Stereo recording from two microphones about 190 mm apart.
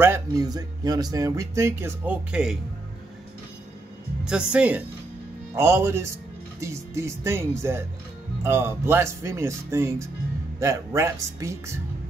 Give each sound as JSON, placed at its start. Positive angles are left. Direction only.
{"t": 0.0, "sound": "speech", "side_deg": -15}
{"t": 4.2, "sound": "speech", "side_deg": -5}